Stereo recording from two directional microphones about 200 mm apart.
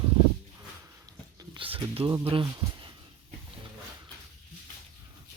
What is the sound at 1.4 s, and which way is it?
Speech, 25° right (ahead or behind).